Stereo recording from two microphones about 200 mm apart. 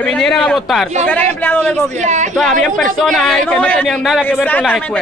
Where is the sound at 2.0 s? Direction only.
35° right (ahead or behind).